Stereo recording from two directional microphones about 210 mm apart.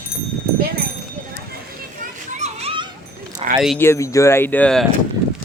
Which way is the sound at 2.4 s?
30° right (ahead or behind).